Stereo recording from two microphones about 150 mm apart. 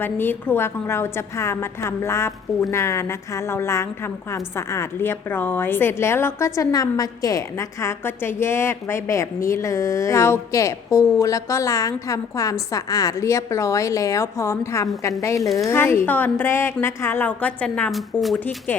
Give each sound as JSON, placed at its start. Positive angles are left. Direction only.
{"t": 0.0, "sound": "a woman's voice", "side_deg": 15}
{"t": 18.3, "sound": "a woman's voice", "side_deg": 10}